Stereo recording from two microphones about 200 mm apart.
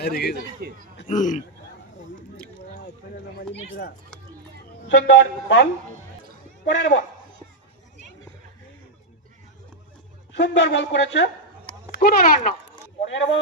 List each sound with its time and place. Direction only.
0.0 s speech: 55° left (ahead or behind)
0.6 s a man's voice: 50° right (ahead or behind)
1.0 s speech: 40° left (ahead or behind)
3.3 s a sound: 55° left (ahead or behind)
4.9 s speech: 65° left (ahead or behind)
6.7 s speech: 65° left (ahead or behind)
10.3 s speech: 65° left (ahead or behind)
12.0 s speech: 45° left (ahead or behind)
13.0 s speech: 65° left (ahead or behind)